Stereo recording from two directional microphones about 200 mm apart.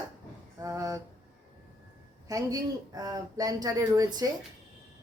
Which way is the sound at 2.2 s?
20° right (ahead or behind).